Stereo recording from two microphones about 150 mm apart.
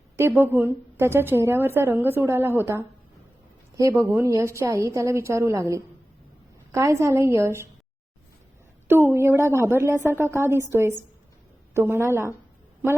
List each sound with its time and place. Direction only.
0.2 s a woman's voice: 15° right (ahead or behind)
8.9 s a woman's voice: 15° right (ahead or behind)